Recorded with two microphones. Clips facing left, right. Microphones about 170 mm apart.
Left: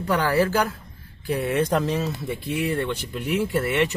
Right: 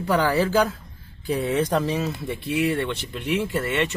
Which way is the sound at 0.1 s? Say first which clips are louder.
Even; 20° right (ahead or behind).